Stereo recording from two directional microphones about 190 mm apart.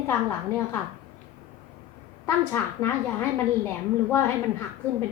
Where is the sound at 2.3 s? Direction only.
10° left (ahead or behind).